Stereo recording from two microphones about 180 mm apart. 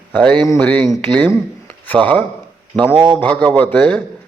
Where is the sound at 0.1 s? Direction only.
10° left (ahead or behind).